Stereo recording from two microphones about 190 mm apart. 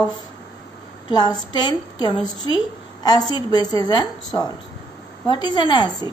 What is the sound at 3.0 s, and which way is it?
Speech, 20° left (ahead or behind).